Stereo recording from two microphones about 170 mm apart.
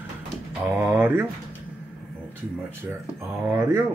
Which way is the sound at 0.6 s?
10° right (ahead or behind).